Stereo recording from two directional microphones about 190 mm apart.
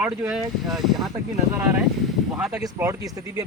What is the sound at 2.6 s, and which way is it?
Speech, 15° right (ahead or behind).